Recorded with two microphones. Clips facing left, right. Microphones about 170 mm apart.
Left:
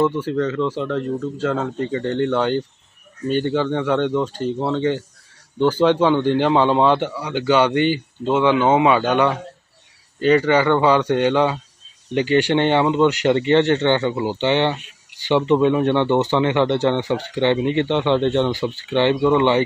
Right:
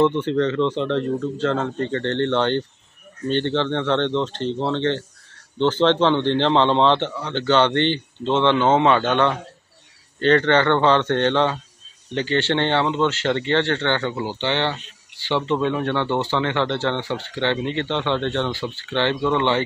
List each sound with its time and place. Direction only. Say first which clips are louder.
0.0 s speech: right 1 dB; 5° left (ahead or behind)